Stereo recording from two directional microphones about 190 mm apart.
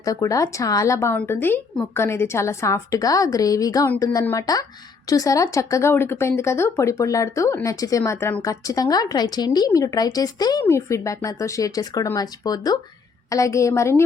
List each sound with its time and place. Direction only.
0.0 s speech: 15° left (ahead or behind)